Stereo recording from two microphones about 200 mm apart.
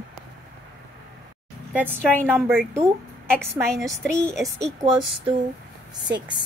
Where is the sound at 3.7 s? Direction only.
Centre (ahead or behind).